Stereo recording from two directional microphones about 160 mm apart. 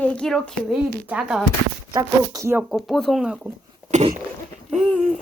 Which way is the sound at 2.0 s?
20° right (ahead or behind).